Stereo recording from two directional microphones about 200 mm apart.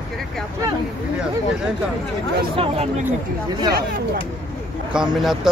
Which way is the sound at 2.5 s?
25° right (ahead or behind).